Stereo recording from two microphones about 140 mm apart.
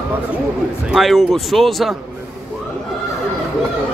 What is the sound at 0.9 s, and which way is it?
Speech, centre (ahead or behind).